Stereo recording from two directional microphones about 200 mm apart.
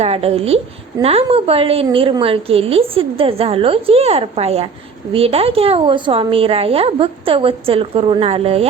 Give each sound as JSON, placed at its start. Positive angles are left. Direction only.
{"t": 0.0, "sound": "a woman's voice", "side_deg": -30}